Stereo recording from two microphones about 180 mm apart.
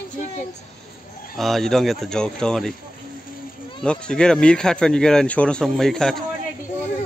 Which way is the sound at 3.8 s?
5° left (ahead or behind).